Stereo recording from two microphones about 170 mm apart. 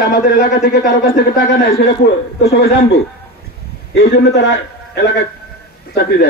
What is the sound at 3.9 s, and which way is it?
A man's voice, 90° left.